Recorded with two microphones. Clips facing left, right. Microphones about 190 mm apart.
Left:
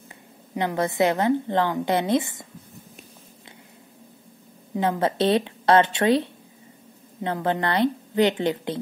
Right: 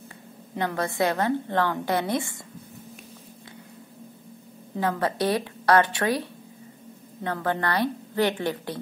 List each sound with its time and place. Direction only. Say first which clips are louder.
0.6 s a woman's voice: left 3 dB; 20° left (ahead or behind)
4.7 s a woman's voice: left 3 dB; 20° left (ahead or behind)
7.2 s a woman's voice: left 2 dB; 20° left (ahead or behind)